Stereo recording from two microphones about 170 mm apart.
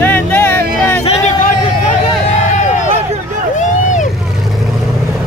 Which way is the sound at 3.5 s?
45° left (ahead or behind).